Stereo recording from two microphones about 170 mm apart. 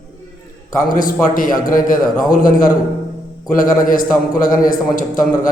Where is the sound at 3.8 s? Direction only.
55° left (ahead or behind).